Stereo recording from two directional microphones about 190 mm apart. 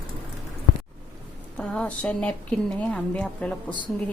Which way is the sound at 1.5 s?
5° left (ahead or behind).